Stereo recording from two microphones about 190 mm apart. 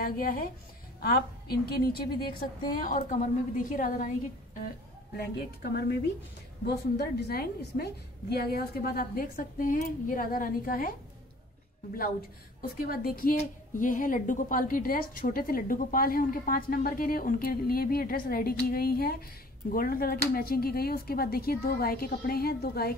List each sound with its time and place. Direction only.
0.0 s a woman's voice: 50° left (ahead or behind)
3.0 s a woman's voice: 45° left (ahead or behind)
5.1 s a woman's voice: 55° left (ahead or behind)
12.7 s a woman's voice: 50° left (ahead or behind)